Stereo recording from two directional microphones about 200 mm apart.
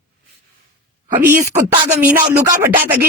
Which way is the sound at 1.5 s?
20° right (ahead or behind).